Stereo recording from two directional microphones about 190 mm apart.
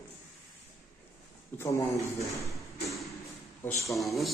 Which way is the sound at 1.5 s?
15° left (ahead or behind).